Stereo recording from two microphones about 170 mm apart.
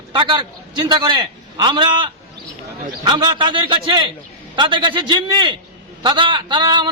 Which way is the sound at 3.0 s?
25° right (ahead or behind).